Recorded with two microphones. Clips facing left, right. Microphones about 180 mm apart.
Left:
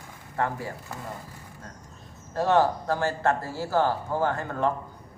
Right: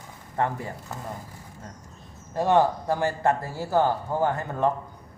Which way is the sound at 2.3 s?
15° right (ahead or behind).